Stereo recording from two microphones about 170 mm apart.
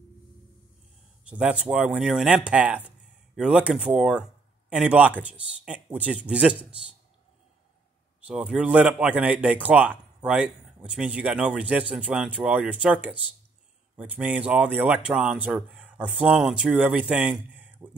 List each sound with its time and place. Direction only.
1.3 s speech: 5° right (ahead or behind)
8.3 s a man's voice: 5° right (ahead or behind)